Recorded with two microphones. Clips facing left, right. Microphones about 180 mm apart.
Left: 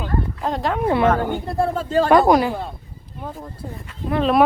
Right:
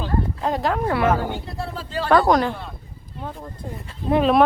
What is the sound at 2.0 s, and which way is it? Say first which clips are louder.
Speech: left 1 dB; 10° left (ahead or behind).